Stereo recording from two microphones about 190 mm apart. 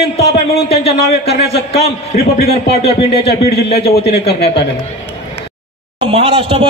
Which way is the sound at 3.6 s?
35° left (ahead or behind).